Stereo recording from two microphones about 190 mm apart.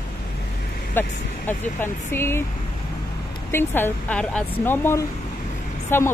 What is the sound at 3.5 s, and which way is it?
Speech, 10° left (ahead or behind).